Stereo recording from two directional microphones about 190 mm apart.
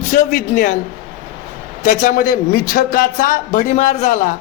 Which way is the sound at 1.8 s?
40° left (ahead or behind).